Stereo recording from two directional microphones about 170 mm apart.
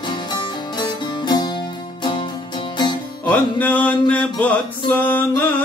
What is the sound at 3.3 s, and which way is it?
Music, 10° left (ahead or behind).